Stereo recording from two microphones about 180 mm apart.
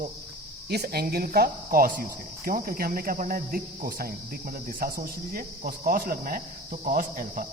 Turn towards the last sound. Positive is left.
turn(degrees=-50)  # may be behind; listen again after turning